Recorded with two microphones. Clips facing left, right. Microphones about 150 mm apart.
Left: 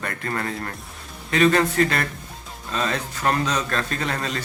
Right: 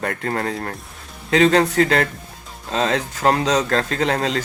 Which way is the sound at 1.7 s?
75° right (ahead or behind).